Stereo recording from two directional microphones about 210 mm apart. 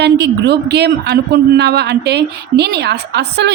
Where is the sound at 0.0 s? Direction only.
50° right (ahead or behind).